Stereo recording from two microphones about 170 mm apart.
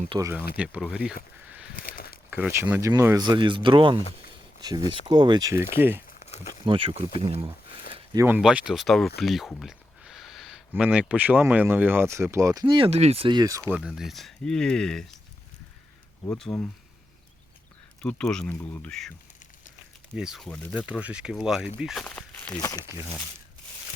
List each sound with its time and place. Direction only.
0.2 s speech: 15° right (ahead or behind)
1.7 s a sound: 55° left (ahead or behind)
2.3 s speech: 15° right (ahead or behind)
6.2 s crumpling: 40° left (ahead or behind)
6.5 s speech: 30° right (ahead or behind)
8.4 s speech: 5° right (ahead or behind)
12.6 s speech: 30° right (ahead or behind)
13.7 s speech: 5° right (ahead or behind)
16.4 s speech: 5° left (ahead or behind)
18.0 s speech: 5° left (ahead or behind)
20.1 s speech: 5° right (ahead or behind)
20.8 s speech: 5° right (ahead or behind)
22.5 s speech: 25° left (ahead or behind)